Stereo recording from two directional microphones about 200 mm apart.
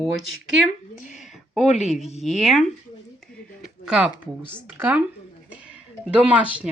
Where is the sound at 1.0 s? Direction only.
35° left (ahead or behind).